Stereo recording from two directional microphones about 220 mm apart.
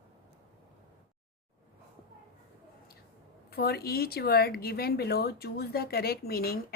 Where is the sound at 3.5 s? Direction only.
45° left (ahead or behind).